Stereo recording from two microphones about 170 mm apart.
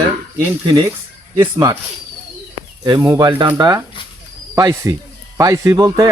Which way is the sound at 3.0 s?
20° right (ahead or behind).